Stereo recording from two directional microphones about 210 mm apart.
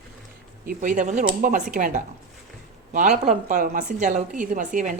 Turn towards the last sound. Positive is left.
turn(degrees=-40)  # may be behind; listen again after turning